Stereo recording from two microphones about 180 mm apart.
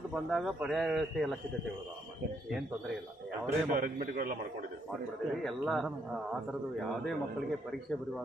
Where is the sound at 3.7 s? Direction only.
50° right (ahead or behind).